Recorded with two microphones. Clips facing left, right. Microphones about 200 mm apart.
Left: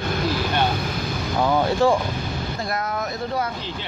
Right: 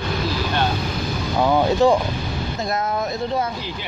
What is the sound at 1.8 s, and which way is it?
Speech, 20° right (ahead or behind).